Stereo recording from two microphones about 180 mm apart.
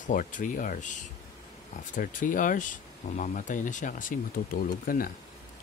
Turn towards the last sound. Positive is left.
turn(degrees=50)  # may be behind; listen again after turning